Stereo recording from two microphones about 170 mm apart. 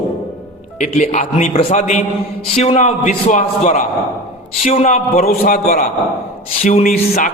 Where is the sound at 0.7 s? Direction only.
40° left (ahead or behind).